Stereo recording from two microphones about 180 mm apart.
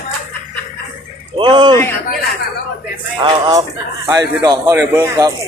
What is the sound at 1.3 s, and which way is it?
Speech, 25° right (ahead or behind).